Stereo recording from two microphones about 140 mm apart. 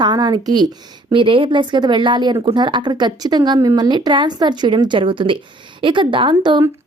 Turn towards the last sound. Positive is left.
turn(degrees=-35)  # may be behind; listen again after turning